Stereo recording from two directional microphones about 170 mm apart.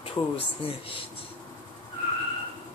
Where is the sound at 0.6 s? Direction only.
35° left (ahead or behind).